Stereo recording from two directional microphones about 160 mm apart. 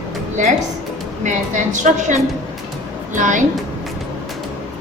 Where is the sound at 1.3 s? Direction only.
50° right (ahead or behind).